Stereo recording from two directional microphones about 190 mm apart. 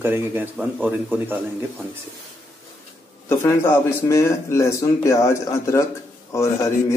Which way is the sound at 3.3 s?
15° left (ahead or behind).